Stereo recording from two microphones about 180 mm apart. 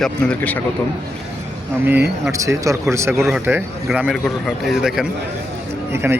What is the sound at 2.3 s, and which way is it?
Speech, 15° right (ahead or behind).